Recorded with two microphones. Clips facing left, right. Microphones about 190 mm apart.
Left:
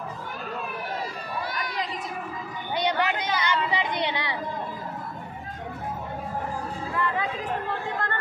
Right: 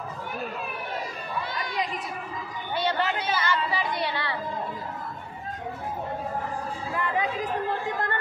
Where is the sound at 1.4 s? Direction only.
25° right (ahead or behind).